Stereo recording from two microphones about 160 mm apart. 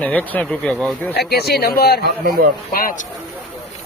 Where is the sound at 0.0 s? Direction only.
10° left (ahead or behind).